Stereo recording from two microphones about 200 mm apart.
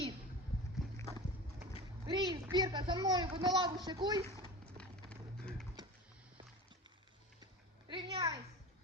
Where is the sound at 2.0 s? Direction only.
25° right (ahead or behind).